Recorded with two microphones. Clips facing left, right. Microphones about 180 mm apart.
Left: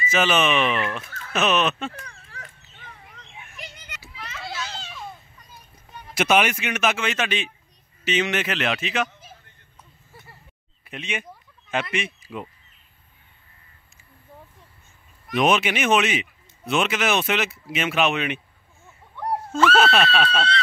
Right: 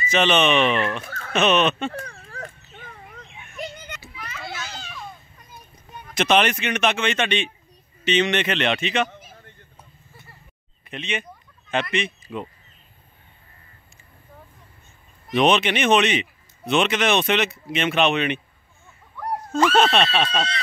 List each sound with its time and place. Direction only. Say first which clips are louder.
0.1 s speech: right 2 dB; 5° left (ahead or behind)
1.0 s a sound: right 5 dB; 50° right (ahead or behind)
1.3 s speech: right 3 dB; 5° left (ahead or behind)
2.0 s a sound: right 8 dB; 50° right (ahead or behind)
4.2 s children playing: left 1 dB; 25° left (ahead or behind)
6.1 s speech: right 1 dB; 5° left (ahead or behind)
10.8 s a sound: right 2 dB; 10° left (ahead or behind)
15.4 s speech: right 2 dB; 5° left (ahead or behind)
19.8 s speech: right 2 dB; 5° left (ahead or behind)
20.2 s speech: left 2 dB; 15° right (ahead or behind)